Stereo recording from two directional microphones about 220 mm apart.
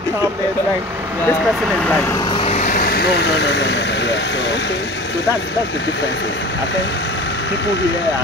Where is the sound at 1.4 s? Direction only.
Centre (ahead or behind).